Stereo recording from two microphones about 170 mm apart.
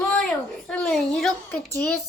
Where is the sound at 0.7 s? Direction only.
5° left (ahead or behind).